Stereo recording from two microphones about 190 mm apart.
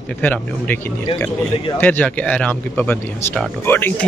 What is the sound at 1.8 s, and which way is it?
A man's voice, 10° left (ahead or behind).